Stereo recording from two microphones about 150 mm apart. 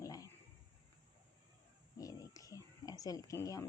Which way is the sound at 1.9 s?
25° left (ahead or behind).